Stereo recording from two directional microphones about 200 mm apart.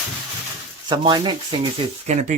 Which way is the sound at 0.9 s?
25° right (ahead or behind).